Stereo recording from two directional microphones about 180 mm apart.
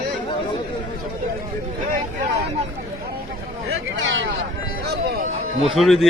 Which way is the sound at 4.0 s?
90° right.